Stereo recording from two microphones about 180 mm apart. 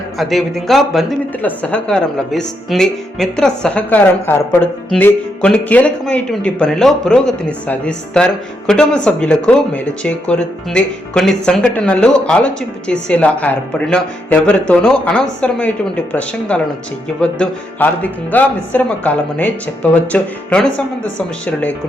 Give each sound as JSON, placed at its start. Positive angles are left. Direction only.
{"t": 0.2, "sound": "speech", "side_deg": 0}